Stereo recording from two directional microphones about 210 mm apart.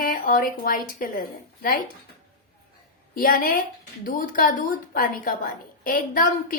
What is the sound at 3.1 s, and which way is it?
Speech, 40° left (ahead or behind).